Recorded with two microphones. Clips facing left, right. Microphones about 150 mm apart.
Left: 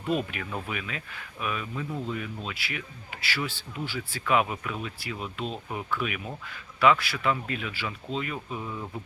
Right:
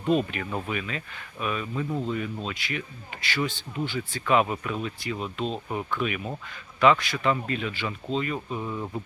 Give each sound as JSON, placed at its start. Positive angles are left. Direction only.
{"t": 0.1, "sound": "a man's voice", "side_deg": 5}